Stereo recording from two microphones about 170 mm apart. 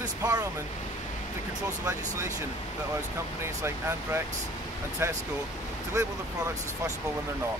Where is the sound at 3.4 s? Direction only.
15° right (ahead or behind).